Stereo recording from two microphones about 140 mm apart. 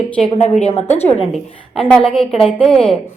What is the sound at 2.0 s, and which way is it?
Speech, 40° left (ahead or behind).